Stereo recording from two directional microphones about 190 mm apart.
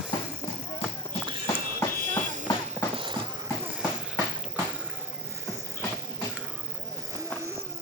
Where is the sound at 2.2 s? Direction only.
40° right (ahead or behind).